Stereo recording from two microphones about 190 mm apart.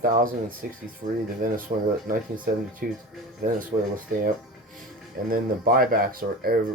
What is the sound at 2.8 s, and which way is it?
Speech, 50° right (ahead or behind).